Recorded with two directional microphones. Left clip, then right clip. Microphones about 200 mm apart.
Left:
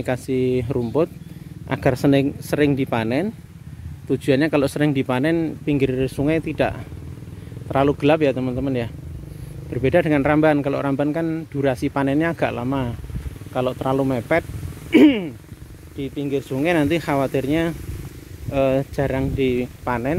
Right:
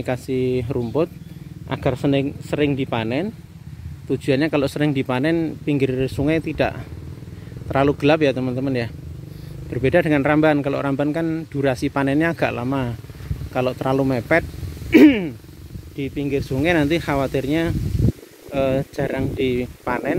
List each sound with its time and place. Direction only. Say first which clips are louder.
0.0 s a man's voice: left 1 dB; 5° left (ahead or behind); by 14.4 s 10° right (ahead or behind)
14.9 s purr: right 2 dB; 15° right (ahead or behind)
16.0 s a man's voice: right 1 dB; 10° right (ahead or behind)